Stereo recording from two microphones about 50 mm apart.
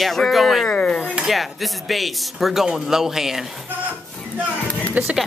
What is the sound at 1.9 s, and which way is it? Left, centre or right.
A man's voice, centre.